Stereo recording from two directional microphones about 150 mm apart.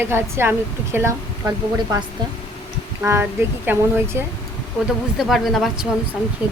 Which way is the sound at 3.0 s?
15° right (ahead or behind).